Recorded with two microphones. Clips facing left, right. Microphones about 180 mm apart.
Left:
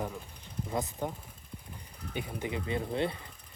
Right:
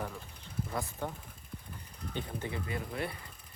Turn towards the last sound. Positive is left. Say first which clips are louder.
# left 6 dB
turn(degrees=25)  # may be behind; listen again after turning